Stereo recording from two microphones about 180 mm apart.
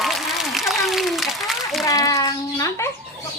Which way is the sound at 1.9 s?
20° left (ahead or behind).